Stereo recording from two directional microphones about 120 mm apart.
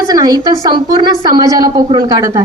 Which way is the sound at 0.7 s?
40° right (ahead or behind).